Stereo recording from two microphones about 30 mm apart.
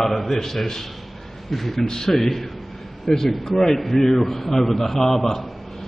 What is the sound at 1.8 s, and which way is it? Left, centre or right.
Speech, centre.